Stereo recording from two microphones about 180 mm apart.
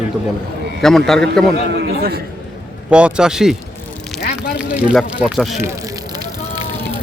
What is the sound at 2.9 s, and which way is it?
Speech, 5° right (ahead or behind).